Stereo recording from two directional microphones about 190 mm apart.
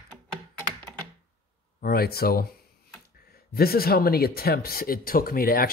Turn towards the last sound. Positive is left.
turn(degrees=50)  # may be behind; listen again after turning